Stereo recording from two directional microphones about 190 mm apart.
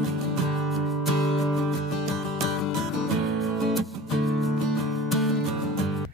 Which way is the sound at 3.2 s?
Centre (ahead or behind).